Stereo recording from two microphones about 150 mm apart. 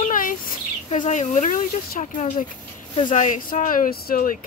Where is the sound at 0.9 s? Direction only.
55° left (ahead or behind).